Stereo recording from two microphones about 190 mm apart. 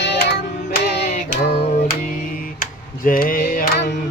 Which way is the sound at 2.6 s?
45° left (ahead or behind).